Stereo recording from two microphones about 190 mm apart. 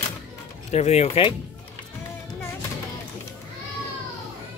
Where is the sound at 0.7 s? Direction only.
35° left (ahead or behind).